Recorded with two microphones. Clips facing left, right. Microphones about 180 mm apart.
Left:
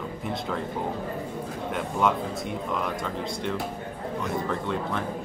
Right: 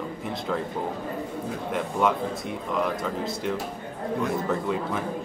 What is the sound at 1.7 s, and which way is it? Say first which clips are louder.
Speech: right 1 dB; centre (ahead or behind).